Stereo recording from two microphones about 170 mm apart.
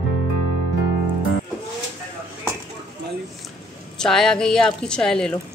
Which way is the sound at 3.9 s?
5° left (ahead or behind).